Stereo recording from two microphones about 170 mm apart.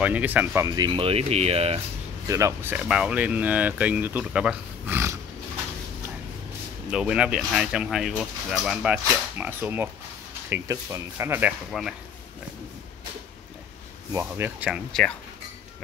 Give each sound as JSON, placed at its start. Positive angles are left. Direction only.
{"t": 0.0, "sound": "speech", "side_deg": -10}
{"t": 0.7, "sound": "speech", "side_deg": -25}
{"t": 2.2, "sound": "speech", "side_deg": -20}
{"t": 6.9, "sound": "speech", "side_deg": -5}
{"t": 11.7, "sound": "speech", "side_deg": 0}
{"t": 14.1, "sound": "speech", "side_deg": -10}
{"t": 14.9, "sound": "speech", "side_deg": 5}